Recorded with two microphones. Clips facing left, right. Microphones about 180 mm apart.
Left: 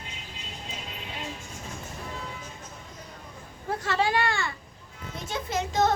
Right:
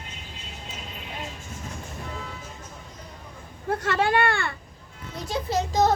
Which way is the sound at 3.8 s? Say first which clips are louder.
Right 3 dB; 55° right (ahead or behind).